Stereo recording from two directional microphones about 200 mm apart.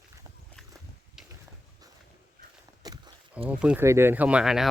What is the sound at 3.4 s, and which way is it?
Speech, 5° right (ahead or behind).